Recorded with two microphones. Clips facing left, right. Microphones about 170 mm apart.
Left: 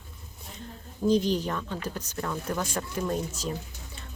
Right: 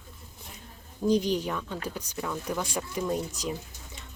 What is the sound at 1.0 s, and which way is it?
Speech, 15° right (ahead or behind).